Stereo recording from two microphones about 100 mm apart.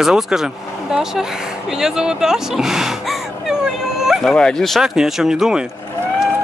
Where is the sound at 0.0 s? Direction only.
5° right (ahead or behind).